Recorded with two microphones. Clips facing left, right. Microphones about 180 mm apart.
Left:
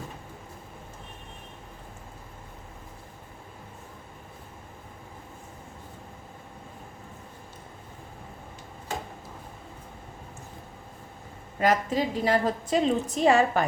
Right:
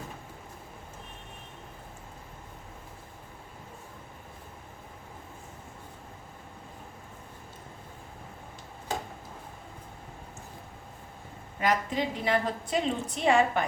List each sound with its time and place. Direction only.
11.6 s a woman's voice: 40° left (ahead or behind)